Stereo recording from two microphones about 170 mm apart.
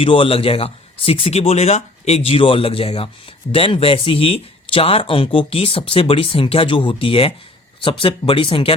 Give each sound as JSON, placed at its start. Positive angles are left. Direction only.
{"t": 0.0, "sound": "speech", "side_deg": 30}